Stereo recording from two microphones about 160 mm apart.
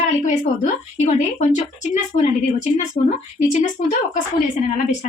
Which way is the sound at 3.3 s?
50° left (ahead or behind).